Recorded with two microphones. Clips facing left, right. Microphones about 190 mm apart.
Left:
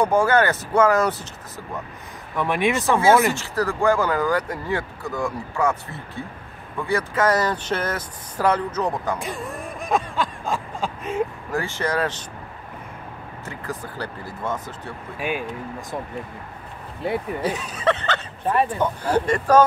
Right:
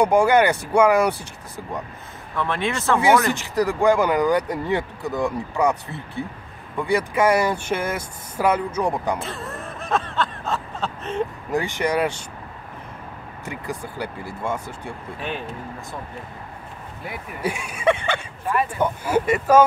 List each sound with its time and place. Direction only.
0.0 s speech: 15° right (ahead or behind)
2.3 s speech: 15° left (ahead or behind)
3.3 s speech: 15° right (ahead or behind)
9.2 s a sound: 15° left (ahead or behind)
11.5 s speech: 15° right (ahead or behind)
13.5 s speech: 15° right (ahead or behind)
15.1 s speech: 10° left (ahead or behind)
17.0 s speech: 30° left (ahead or behind)
17.4 s speech: 10° right (ahead or behind)
18.4 s speech: 30° left (ahead or behind)
18.8 s speech: 10° right (ahead or behind)